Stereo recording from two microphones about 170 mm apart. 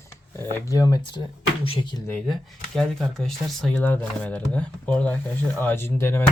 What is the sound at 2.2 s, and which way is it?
Speech, centre (ahead or behind).